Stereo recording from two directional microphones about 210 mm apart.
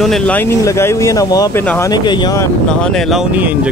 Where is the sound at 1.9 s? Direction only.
20° left (ahead or behind).